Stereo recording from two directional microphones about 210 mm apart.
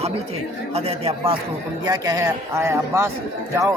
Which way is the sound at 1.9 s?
15° right (ahead or behind).